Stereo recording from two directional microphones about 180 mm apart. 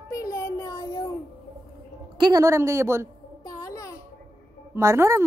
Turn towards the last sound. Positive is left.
turn(degrees=-15)  # may be behind; listen again after turning